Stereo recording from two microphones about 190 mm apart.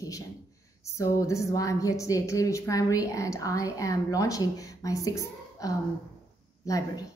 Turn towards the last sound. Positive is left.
turn(degrees=15)  # may be behind; listen again after turning